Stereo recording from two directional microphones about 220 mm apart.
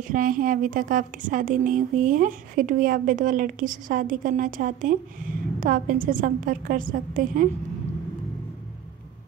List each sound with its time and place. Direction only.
0.1 s a woman's voice: 40° right (ahead or behind)